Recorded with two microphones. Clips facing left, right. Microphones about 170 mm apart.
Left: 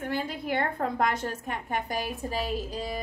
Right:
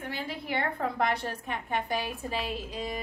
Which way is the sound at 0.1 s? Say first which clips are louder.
Left 4 dB; 50° left (ahead or behind).